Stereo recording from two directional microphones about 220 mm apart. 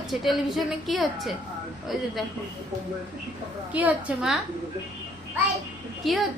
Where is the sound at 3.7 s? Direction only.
5° right (ahead or behind).